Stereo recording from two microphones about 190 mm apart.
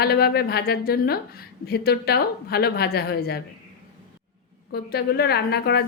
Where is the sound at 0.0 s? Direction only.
55° left (ahead or behind).